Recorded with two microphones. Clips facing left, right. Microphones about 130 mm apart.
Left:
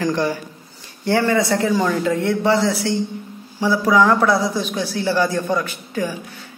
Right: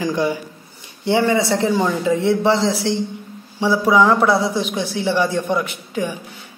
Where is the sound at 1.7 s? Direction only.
10° right (ahead or behind).